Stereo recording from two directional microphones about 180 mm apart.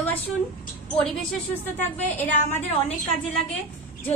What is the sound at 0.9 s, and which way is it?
A woman's voice, 5° left (ahead or behind).